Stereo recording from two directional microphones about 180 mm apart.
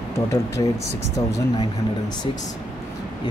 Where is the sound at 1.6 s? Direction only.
25° left (ahead or behind).